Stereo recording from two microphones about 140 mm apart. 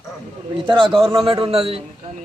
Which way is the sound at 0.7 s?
35° right (ahead or behind).